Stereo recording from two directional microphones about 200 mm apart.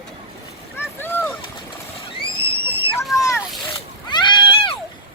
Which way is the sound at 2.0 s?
25° left (ahead or behind).